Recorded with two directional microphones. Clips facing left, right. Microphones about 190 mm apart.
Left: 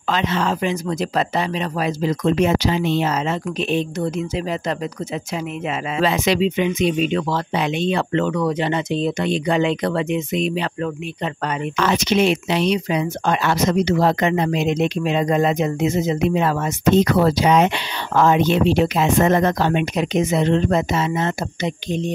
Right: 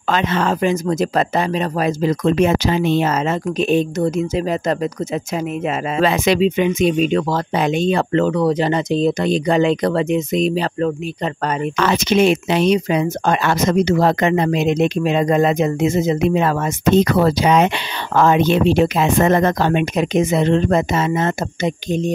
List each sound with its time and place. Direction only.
0.1 s speech: 50° right (ahead or behind)
11.7 s speech: 75° right (ahead or behind)
12.0 s speech: 50° right (ahead or behind); by 17.6 s 70° right (ahead or behind)
18.1 s speech: 55° right (ahead or behind)